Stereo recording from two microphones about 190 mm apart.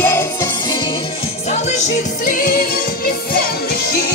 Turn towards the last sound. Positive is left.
turn(degrees=50)  # may be behind; listen again after turning